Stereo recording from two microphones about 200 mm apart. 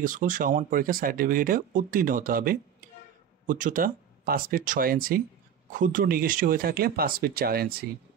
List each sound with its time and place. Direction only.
0.0 s speech: 40° right (ahead or behind)